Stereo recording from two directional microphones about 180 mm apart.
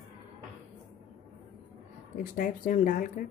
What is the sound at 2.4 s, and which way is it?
Speech, 50° left (ahead or behind).